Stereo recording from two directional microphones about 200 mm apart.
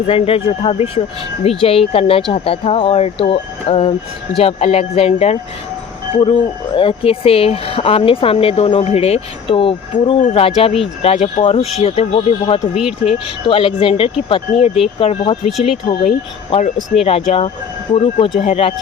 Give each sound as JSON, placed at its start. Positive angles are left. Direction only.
{"t": 0.1, "sound": "speech", "side_deg": 30}
{"t": 12.7, "sound": "speech", "side_deg": 0}
{"t": 13.5, "sound": "speech", "side_deg": 25}